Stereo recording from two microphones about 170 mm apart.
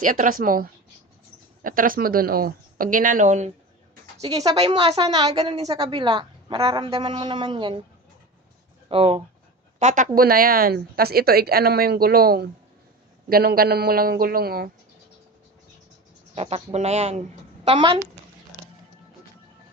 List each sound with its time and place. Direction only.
0.0 s a woman's voice: 50° right (ahead or behind)
4.3 s a woman's voice: 20° right (ahead or behind)
4.5 s a woman's voice: 35° right (ahead or behind)
8.9 s speech: 35° right (ahead or behind)
9.8 s speech: 50° right (ahead or behind)
10.2 s a woman's voice: 60° right (ahead or behind)
16.3 s speech: 35° right (ahead or behind)